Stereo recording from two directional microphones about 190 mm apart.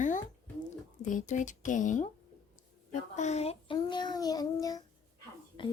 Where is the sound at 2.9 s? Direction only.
35° left (ahead or behind); by 4.8 s 20° left (ahead or behind).